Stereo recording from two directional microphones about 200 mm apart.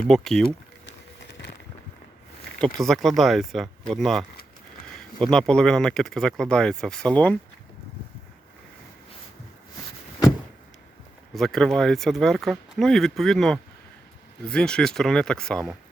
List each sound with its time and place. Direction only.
0.1 s speech: centre (ahead or behind)
0.9 s vehicle: 60° left (ahead or behind)
2.8 s speech: centre (ahead or behind)
11.3 s speech: centre (ahead or behind)